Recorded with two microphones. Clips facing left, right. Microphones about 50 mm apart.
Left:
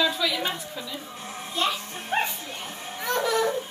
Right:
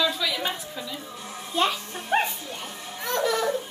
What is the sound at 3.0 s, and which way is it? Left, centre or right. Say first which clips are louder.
Laughter: left 1 dB; centre.